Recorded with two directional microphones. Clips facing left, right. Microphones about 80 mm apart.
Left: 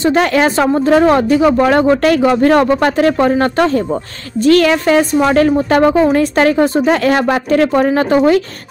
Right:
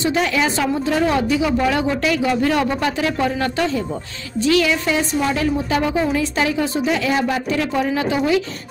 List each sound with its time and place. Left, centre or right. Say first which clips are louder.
0.0 s a woman's voice: left 7 dB; left